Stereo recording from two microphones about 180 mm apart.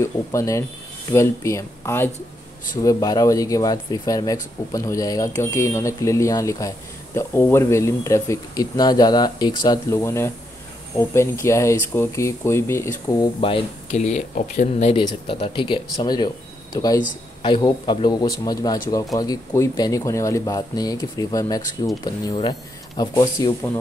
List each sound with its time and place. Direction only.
0.0 s speech: 15° left (ahead or behind)
13.8 s speech: 40° left (ahead or behind)
15.0 s speech: 30° left (ahead or behind)